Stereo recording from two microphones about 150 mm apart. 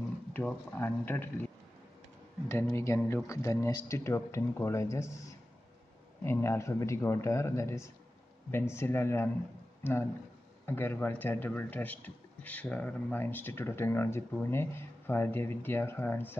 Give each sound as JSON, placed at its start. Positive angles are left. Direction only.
{"t": 0.3, "sound": "a man's voice", "side_deg": 10}
{"t": 2.7, "sound": "speech", "side_deg": 20}
{"t": 6.2, "sound": "a man's voice", "side_deg": 15}